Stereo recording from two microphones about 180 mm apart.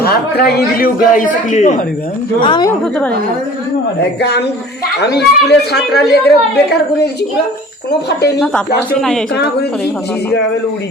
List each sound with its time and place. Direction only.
0.0 s a man's voice: 60° left (ahead or behind); by 1.7 s 45° left (ahead or behind)
2.4 s a woman's voice: 25° left (ahead or behind)
2.8 s a woman's voice: 5° left (ahead or behind)
4.2 s speech: 65° left (ahead or behind)
9.0 s speech: centre (ahead or behind)
9.3 s a man's voice: 65° left (ahead or behind)